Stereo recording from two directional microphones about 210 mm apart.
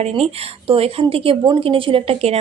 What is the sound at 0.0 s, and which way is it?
A woman's voice, 30° right (ahead or behind).